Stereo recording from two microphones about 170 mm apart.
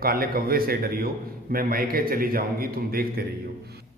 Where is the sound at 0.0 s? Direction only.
60° right (ahead or behind).